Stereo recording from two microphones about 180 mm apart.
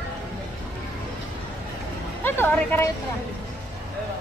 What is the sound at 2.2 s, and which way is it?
Speech, 10° left (ahead or behind).